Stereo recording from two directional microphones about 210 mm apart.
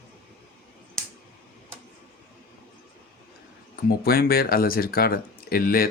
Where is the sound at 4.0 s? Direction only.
45° left (ahead or behind).